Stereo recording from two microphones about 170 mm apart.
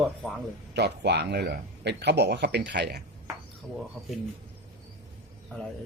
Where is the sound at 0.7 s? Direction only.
80° right.